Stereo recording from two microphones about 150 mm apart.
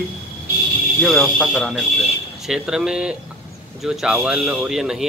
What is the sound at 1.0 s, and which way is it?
Speech, 5° left (ahead or behind).